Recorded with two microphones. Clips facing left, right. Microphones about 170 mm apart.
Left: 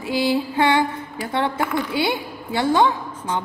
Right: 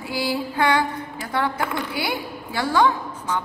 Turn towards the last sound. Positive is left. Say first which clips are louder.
# left 1 dB
turn(degrees=20)  # may be behind; listen again after turning